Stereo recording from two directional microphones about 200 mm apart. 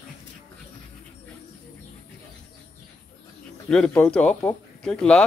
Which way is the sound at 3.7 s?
5° left (ahead or behind).